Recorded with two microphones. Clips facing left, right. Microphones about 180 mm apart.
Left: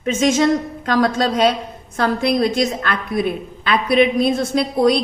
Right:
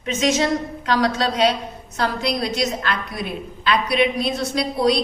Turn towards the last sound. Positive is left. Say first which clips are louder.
# left 4 dB
turn(degrees=50)  # may be behind; listen again after turning